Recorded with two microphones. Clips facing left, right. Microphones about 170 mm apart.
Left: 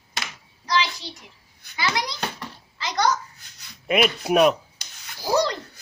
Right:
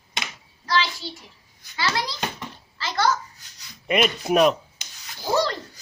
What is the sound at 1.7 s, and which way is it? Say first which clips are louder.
Speech: even; 15° left (ahead or behind).